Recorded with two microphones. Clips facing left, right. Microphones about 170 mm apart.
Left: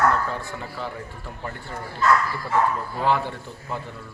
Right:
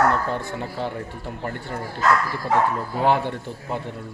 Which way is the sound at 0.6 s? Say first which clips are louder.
Right 4 dB; 50° right (ahead or behind).